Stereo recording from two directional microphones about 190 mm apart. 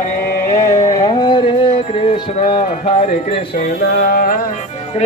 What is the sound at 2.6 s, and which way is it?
Music, 40° left (ahead or behind).